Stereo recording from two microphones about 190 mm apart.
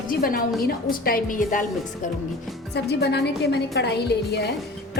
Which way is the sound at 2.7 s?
60° left (ahead or behind).